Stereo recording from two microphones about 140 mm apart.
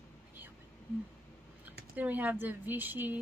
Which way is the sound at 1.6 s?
10° right (ahead or behind).